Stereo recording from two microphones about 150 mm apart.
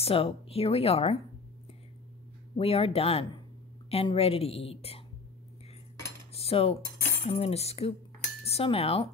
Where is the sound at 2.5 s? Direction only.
40° left (ahead or behind).